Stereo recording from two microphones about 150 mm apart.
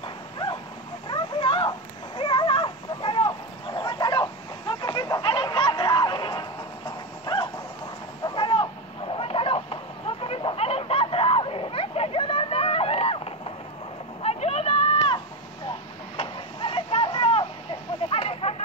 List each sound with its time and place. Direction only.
0.0 s dog: 35° left (ahead or behind)
1.0 s cat: 30° left (ahead or behind)
7.2 s a sound: 35° left (ahead or behind)